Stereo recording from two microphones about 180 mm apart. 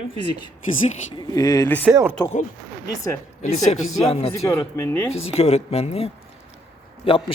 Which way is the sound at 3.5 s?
40° left (ahead or behind).